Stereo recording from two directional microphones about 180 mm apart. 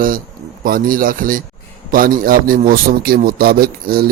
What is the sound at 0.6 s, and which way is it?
Speech, 50° right (ahead or behind).